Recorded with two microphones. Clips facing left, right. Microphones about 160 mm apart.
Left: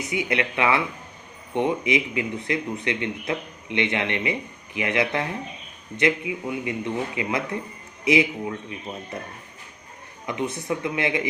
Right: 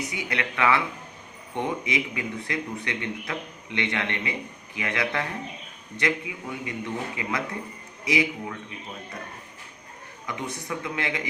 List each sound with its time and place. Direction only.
0.1 s speech: 20° left (ahead or behind)
10.2 s speech: 20° left (ahead or behind)